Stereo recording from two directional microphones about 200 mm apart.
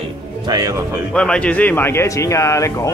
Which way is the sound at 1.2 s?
5° left (ahead or behind).